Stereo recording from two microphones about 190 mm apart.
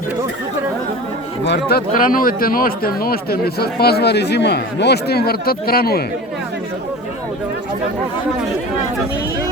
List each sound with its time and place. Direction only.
1.5 s speech: 50° left (ahead or behind)